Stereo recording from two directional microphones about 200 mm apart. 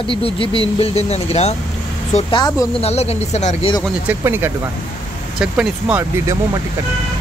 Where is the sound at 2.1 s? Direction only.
20° left (ahead or behind).